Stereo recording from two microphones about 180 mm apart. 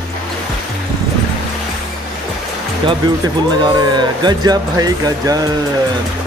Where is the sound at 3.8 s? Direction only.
25° right (ahead or behind).